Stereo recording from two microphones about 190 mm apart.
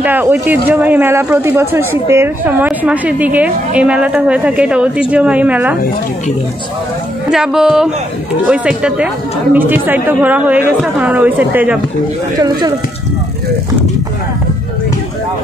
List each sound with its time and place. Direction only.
0.0 s speech: 10° right (ahead or behind)
7.2 s speech: centre (ahead or behind)
12.4 s speech: 20° right (ahead or behind)